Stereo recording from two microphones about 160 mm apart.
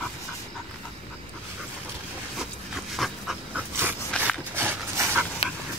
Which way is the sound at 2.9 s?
Centre (ahead or behind).